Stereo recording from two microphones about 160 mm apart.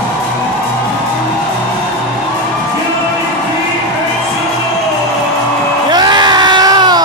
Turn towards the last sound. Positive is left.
turn(degrees=-25)  # may be behind; listen again after turning